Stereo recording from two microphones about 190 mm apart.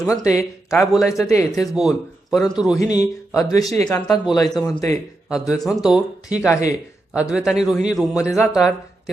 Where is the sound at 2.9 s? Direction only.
20° left (ahead or behind).